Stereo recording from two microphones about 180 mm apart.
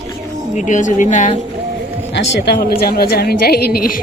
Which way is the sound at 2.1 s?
65° left (ahead or behind).